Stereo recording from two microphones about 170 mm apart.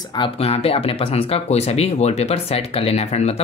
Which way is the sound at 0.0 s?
25° left (ahead or behind).